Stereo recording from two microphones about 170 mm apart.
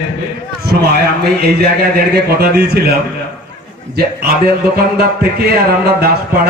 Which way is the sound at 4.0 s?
65° right (ahead or behind).